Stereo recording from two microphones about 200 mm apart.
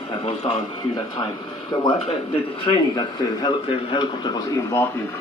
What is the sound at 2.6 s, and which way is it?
A man's voice, 25° left (ahead or behind).